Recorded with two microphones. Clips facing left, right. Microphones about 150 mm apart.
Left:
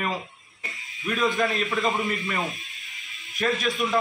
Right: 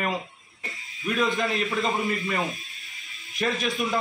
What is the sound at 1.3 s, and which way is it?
Speech, 20° right (ahead or behind).